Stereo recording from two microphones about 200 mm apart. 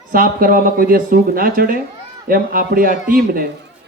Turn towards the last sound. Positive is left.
turn(degrees=-45)  # may be behind; listen again after turning